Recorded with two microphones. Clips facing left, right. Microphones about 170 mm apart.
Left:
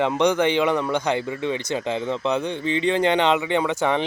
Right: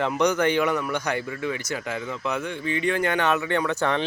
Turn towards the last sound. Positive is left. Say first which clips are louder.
# left 3 dB
turn(degrees=15)  # may be behind; listen again after turning